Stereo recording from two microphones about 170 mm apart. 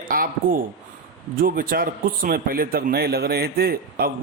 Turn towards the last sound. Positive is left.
turn(degrees=-60)  # may be behind; listen again after turning